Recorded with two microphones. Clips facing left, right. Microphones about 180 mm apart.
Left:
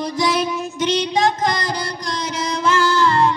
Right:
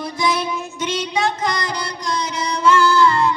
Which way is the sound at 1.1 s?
45° left (ahead or behind).